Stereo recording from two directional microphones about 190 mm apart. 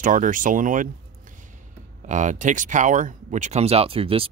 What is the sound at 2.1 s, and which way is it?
Speech, 40° right (ahead or behind).